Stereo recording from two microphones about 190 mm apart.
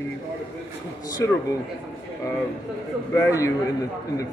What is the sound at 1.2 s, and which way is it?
Speech, 15° left (ahead or behind).